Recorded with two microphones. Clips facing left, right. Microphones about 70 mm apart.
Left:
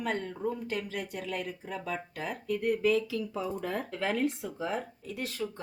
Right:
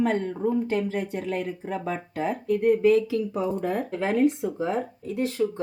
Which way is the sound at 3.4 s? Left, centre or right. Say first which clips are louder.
Right 6 dB; right.